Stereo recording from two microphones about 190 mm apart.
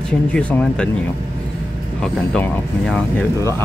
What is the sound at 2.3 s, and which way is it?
Speech, 5° left (ahead or behind).